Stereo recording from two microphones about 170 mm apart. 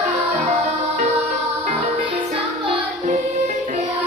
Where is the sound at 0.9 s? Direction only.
50° right (ahead or behind).